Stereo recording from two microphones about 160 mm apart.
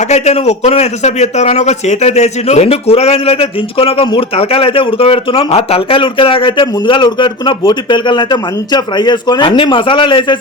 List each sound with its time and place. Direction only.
0.1 s a man's voice: 45° left (ahead or behind)